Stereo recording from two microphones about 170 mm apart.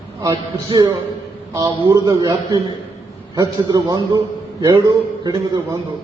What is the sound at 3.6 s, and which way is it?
A man's voice, 20° right (ahead or behind).